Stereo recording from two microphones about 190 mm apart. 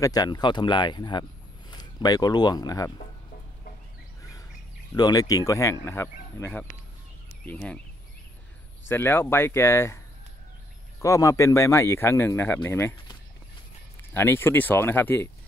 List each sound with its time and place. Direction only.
0.0 s speech: 20° left (ahead or behind)
4.2 s chirp: 15° left (ahead or behind)
4.9 s speech: 20° left (ahead or behind)
8.8 s speech: 10° left (ahead or behind)
11.0 s speech: 15° left (ahead or behind)
14.1 s speech: 10° left (ahead or behind)